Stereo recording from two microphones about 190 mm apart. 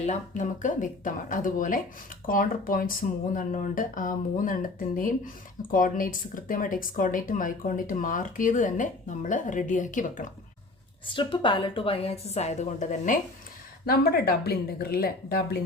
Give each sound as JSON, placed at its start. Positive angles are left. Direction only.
{"t": 0.0, "sound": "speech", "side_deg": 40}
{"t": 11.0, "sound": "a woman's voice", "side_deg": 25}
{"t": 13.8, "sound": "speech", "side_deg": 55}